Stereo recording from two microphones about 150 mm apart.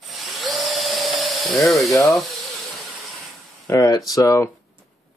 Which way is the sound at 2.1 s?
Centre (ahead or behind).